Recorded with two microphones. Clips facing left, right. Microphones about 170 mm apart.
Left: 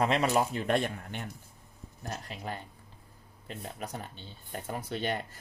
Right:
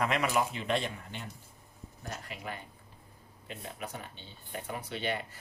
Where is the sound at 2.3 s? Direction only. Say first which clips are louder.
Left 2 dB; 40° left (ahead or behind).